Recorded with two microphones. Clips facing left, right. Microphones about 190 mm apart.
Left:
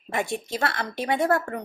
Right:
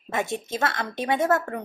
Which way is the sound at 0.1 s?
20° right (ahead or behind).